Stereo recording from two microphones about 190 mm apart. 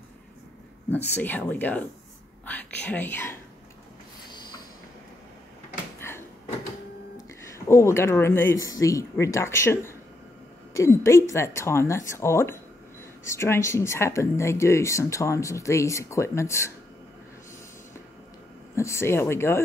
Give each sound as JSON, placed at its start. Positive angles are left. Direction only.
{"t": 0.9, "sound": "speech", "side_deg": 10}
{"t": 6.0, "sound": "a sound", "side_deg": 10}
{"t": 7.5, "sound": "speech", "side_deg": 15}
{"t": 18.8, "sound": "speech", "side_deg": 15}